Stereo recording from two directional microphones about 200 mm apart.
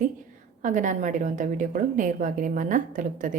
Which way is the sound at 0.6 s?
40° right (ahead or behind).